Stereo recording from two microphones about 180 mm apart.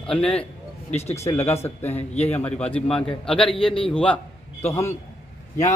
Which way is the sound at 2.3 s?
10° left (ahead or behind).